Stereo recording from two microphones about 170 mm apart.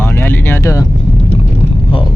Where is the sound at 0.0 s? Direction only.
15° left (ahead or behind).